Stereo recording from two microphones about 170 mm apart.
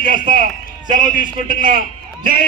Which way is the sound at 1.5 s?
50° right (ahead or behind).